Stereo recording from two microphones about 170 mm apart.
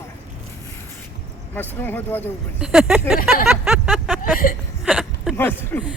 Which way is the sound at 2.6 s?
5° right (ahead or behind).